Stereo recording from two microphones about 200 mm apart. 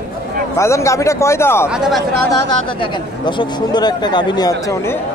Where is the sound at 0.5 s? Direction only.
15° left (ahead or behind).